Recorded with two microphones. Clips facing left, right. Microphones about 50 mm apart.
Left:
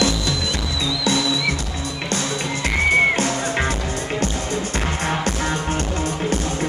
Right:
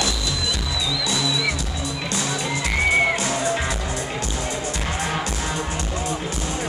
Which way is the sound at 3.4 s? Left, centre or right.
Left.